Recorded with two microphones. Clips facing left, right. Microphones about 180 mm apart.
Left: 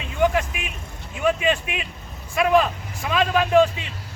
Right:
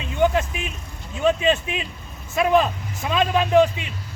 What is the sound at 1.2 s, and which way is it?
A man's voice, 25° right (ahead or behind).